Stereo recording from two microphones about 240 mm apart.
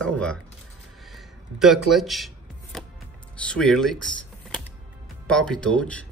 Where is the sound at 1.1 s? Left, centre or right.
Centre.